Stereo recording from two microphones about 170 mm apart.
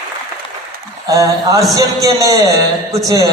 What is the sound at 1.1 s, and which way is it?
Speech, 20° right (ahead or behind).